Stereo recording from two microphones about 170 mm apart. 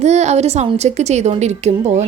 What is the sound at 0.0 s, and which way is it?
A woman's voice, 40° right (ahead or behind).